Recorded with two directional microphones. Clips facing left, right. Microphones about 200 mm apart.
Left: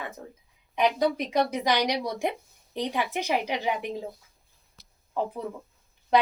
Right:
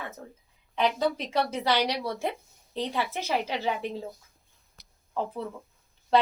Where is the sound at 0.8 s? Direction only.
15° left (ahead or behind).